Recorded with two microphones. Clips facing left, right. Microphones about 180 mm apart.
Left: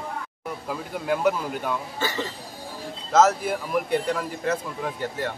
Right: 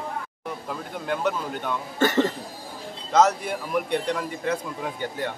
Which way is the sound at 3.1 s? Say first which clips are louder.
Left 1 dB; 5° left (ahead or behind).